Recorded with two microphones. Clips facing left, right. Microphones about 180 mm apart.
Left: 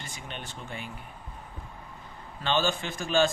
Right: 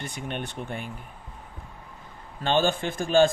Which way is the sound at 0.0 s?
60° right (ahead or behind).